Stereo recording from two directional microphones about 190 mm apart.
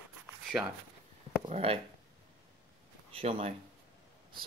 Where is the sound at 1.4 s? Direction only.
30° right (ahead or behind).